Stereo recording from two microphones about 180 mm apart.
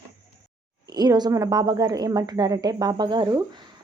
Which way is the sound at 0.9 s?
20° right (ahead or behind).